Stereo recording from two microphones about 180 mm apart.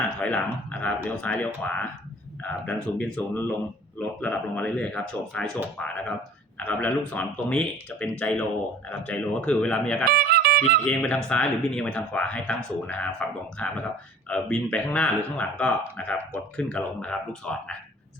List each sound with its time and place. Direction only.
0.2 s speech: 5° left (ahead or behind)
10.0 s speech: 55° right (ahead or behind)
10.8 s speech: 5° left (ahead or behind)